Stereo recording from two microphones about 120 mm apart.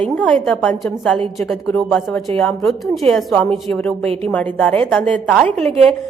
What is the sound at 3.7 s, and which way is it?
A woman's voice, 10° left (ahead or behind).